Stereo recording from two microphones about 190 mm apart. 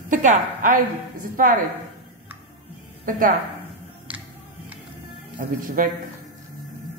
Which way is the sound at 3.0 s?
45° right (ahead or behind).